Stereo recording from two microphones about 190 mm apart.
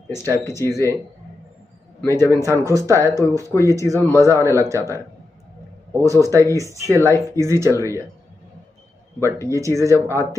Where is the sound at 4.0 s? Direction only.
10° left (ahead or behind).